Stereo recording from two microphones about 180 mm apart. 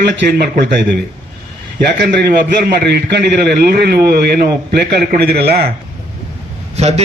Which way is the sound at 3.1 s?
65° right (ahead or behind).